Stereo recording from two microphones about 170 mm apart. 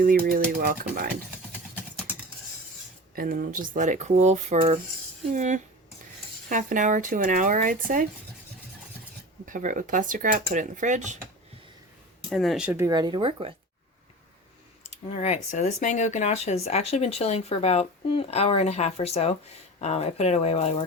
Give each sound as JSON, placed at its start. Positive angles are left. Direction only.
{"t": 0.0, "sound": "speech", "side_deg": -55}
{"t": 3.2, "sound": "speech", "side_deg": -55}
{"t": 9.5, "sound": "speech", "side_deg": -50}
{"t": 12.3, "sound": "speech", "side_deg": 0}
{"t": 15.1, "sound": "speech", "side_deg": 40}